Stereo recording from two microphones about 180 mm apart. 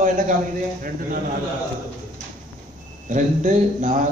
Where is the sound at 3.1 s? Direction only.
45° right (ahead or behind).